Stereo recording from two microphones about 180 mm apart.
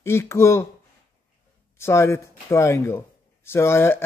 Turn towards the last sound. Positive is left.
turn(degrees=15)  # may be behind; listen again after turning